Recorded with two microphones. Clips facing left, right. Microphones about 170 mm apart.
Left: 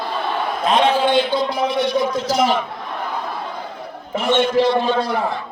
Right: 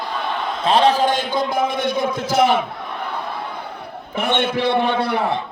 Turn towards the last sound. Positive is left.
turn(degrees=-65)  # may be behind; listen again after turning